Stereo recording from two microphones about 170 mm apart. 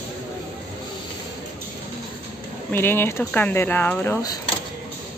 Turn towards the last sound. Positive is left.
turn(degrees=15)  # may be behind; listen again after turning